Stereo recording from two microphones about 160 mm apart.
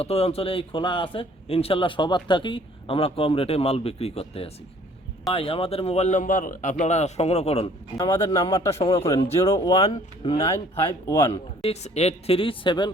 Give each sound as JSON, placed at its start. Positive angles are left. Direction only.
{"t": 0.0, "sound": "a man's voice", "side_deg": 40}
{"t": 7.9, "sound": "speech", "side_deg": 20}
{"t": 11.3, "sound": "a man's voice", "side_deg": 40}